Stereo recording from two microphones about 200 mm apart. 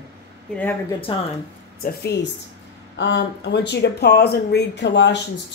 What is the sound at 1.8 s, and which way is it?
Speech, 55° left (ahead or behind).